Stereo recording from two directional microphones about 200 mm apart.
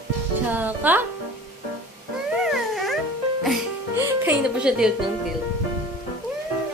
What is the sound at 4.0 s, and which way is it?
Music, 5° right (ahead or behind).